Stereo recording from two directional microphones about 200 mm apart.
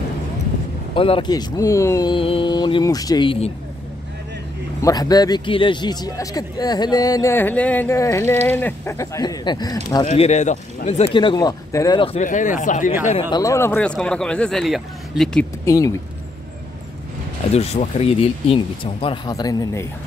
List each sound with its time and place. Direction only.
0.9 s a man's voice: 25° left (ahead or behind)
4.8 s a man's voice: 20° left (ahead or behind)
10.0 s speech: 35° left (ahead or behind)
11.1 s a man's voice: 20° left (ahead or behind)
12.2 s speech: 40° left (ahead or behind)
13.3 s speech: 15° left (ahead or behind)
15.6 s speech: 15° left (ahead or behind)
17.5 s a man's voice: 30° left (ahead or behind); by 19.9 s 15° left (ahead or behind)